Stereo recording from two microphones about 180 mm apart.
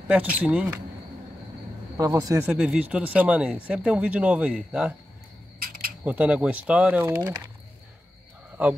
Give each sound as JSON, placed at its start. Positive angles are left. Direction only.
{"t": 0.1, "sound": "speech", "side_deg": -10}
{"t": 2.0, "sound": "speech", "side_deg": -20}
{"t": 2.5, "sound": "speech", "side_deg": -5}
{"t": 6.0, "sound": "speech", "side_deg": -10}